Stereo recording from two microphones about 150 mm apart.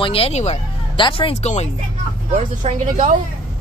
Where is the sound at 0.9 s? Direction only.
35° left (ahead or behind).